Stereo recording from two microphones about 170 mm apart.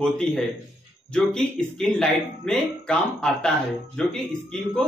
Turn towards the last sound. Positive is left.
turn(degrees=5)  # may be behind; listen again after turning